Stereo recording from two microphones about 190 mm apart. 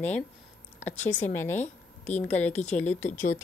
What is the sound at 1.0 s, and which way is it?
A woman's voice, 10° left (ahead or behind).